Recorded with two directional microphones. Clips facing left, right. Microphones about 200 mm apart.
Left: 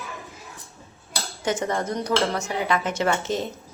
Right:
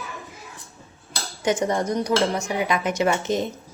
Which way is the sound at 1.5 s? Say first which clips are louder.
Right 3 dB; 15° right (ahead or behind).